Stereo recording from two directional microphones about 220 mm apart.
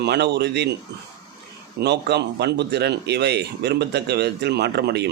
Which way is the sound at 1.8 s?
50° right (ahead or behind).